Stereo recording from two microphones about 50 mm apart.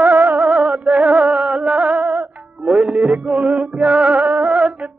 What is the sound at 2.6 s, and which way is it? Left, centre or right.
Music, centre.